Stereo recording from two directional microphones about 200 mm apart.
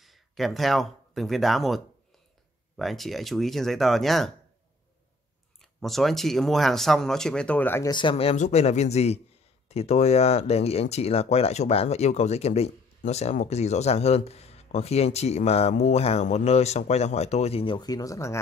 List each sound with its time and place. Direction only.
0.0 s speech: centre (ahead or behind)
2.8 s speech: centre (ahead or behind)
5.6 s speech: centre (ahead or behind)
7.9 s speech: 25° left (ahead or behind)